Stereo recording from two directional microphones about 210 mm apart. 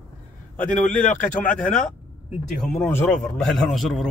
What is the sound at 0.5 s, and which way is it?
Speech, 5° left (ahead or behind).